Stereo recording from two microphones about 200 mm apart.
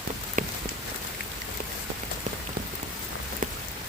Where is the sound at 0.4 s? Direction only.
45° right (ahead or behind).